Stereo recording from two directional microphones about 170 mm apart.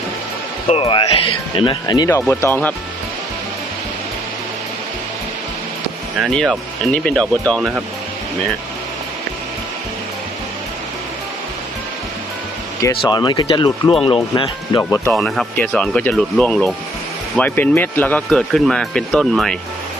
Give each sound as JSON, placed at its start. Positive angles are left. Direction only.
{"t": 0.7, "sound": "speech", "side_deg": 30}
{"t": 6.1, "sound": "speech", "side_deg": 0}
{"t": 13.1, "sound": "speech", "side_deg": 25}
{"t": 14.8, "sound": "speech", "side_deg": 15}
{"t": 15.1, "sound": "speech", "side_deg": 0}